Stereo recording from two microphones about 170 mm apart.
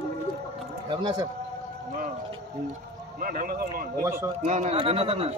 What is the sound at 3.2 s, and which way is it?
Speech, 55° right (ahead or behind).